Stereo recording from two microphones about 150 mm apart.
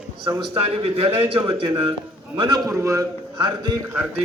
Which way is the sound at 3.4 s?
30° right (ahead or behind).